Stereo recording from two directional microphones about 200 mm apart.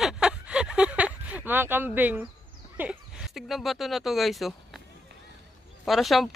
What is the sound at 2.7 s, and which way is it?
Speech, 5° right (ahead or behind).